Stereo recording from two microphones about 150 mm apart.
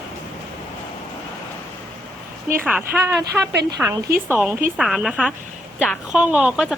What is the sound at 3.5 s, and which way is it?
Speech, 90° right.